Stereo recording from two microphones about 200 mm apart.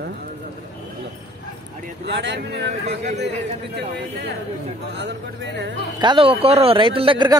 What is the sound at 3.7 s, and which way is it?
Speech, 60° right (ahead or behind).